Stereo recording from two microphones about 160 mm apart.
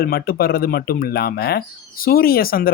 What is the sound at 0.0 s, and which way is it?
Speech, 70° left (ahead or behind).